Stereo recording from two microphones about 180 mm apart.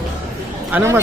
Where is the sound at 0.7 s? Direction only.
10° right (ahead or behind).